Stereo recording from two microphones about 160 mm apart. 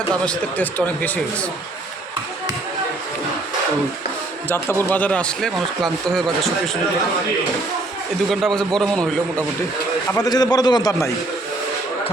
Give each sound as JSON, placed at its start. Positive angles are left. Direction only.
{"t": 0.1, "sound": "a man's voice", "side_deg": 10}
{"t": 4.8, "sound": "speech", "side_deg": 10}
{"t": 8.3, "sound": "speech", "side_deg": 0}
{"t": 10.1, "sound": "a man's voice", "side_deg": 20}